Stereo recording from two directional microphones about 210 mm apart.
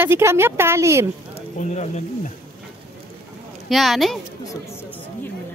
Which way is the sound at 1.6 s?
35° left (ahead or behind).